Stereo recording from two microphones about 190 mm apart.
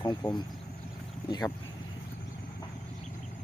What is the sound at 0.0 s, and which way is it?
Speech, 20° left (ahead or behind).